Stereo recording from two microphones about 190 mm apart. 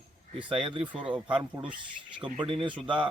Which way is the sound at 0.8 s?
5° right (ahead or behind).